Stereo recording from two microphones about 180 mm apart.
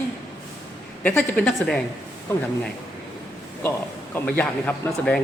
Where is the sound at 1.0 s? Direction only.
5° left (ahead or behind).